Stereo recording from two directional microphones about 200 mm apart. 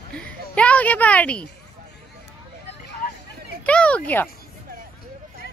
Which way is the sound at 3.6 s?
5° left (ahead or behind).